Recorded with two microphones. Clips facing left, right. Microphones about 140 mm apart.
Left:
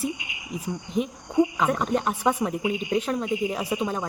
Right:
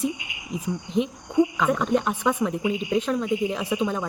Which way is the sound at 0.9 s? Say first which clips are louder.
Right 1 dB; 5° left (ahead or behind).